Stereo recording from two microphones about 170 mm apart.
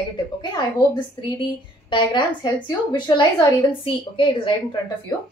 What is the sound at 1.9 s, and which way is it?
A woman's voice, 30° left (ahead or behind).